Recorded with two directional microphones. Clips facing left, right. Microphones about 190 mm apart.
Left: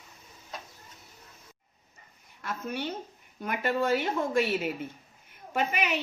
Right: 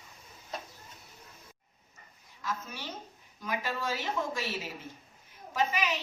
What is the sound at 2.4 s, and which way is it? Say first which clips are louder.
A woman's voice: left 5 dB; 60° left (ahead or behind).